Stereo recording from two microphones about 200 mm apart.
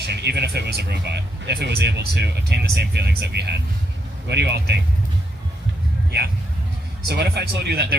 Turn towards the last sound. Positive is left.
turn(degrees=-55)  # may be behind; listen again after turning